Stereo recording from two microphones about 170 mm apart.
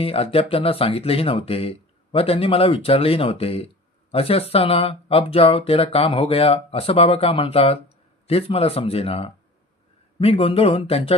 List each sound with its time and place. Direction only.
0.0 s speech: 35° left (ahead or behind)